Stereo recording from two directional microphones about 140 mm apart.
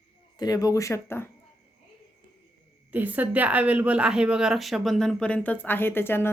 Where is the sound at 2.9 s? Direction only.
10° right (ahead or behind); by 6.3 s 15° left (ahead or behind).